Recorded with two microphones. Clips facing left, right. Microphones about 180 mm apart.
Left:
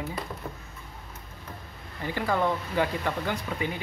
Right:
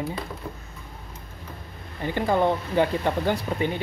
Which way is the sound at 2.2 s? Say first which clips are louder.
Right 5 dB; 25° right (ahead or behind).